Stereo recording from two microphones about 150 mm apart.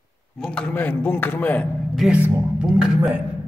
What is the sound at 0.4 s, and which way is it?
A man's voice, 5° left (ahead or behind).